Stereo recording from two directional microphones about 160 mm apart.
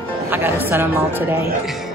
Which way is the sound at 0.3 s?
10° right (ahead or behind).